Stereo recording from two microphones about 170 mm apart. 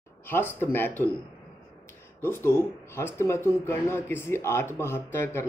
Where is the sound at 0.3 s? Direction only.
10° left (ahead or behind).